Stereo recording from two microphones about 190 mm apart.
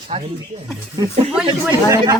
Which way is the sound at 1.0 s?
20° right (ahead or behind).